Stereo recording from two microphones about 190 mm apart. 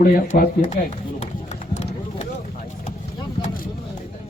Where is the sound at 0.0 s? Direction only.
45° left (ahead or behind).